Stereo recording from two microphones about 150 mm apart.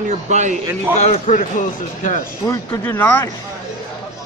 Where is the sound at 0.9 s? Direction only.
50° left (ahead or behind).